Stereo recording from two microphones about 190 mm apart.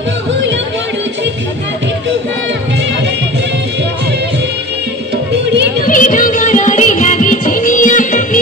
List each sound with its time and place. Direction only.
5.9 s music: 45° left (ahead or behind)